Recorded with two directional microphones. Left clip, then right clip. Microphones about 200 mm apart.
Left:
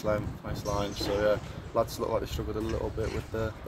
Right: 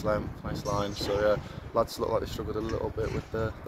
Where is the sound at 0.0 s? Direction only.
10° right (ahead or behind).